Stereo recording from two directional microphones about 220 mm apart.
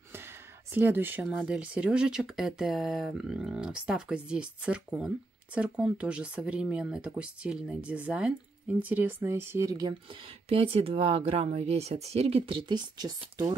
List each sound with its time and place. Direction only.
0.7 s speech: 10° right (ahead or behind)